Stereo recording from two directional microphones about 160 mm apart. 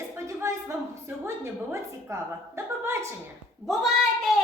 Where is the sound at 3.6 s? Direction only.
Centre (ahead or behind).